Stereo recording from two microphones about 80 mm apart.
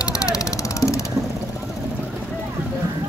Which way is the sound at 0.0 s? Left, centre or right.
Left.